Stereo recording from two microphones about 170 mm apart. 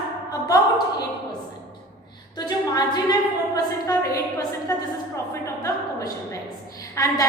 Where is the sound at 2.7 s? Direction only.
25° left (ahead or behind).